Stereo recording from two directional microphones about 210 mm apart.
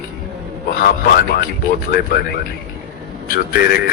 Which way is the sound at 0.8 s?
45° left (ahead or behind).